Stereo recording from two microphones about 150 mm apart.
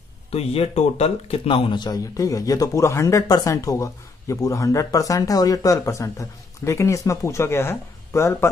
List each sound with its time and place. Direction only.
0.3 s a man's voice: 40° left (ahead or behind); by 8.5 s 15° left (ahead or behind)